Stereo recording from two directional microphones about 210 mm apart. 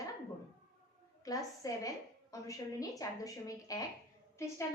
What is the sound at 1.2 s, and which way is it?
A woman's voice, 15° left (ahead or behind).